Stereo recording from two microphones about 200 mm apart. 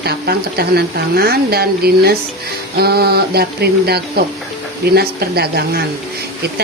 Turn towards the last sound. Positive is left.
turn(degrees=-50)  # may be behind; listen again after turning